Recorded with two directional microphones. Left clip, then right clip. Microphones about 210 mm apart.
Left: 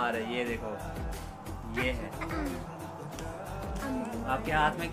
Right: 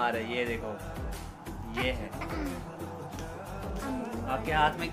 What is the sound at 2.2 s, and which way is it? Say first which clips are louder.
Speech: left 1 dB; centre (ahead or behind).